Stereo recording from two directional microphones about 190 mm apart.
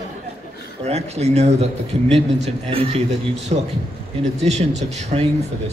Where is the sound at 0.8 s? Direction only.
35° right (ahead or behind).